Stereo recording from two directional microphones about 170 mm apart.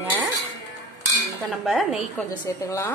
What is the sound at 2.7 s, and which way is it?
Speech, 15° left (ahead or behind).